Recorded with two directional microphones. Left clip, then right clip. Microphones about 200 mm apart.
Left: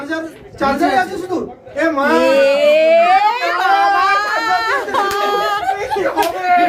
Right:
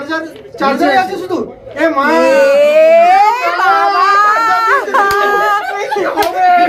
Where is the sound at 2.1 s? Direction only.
20° right (ahead or behind).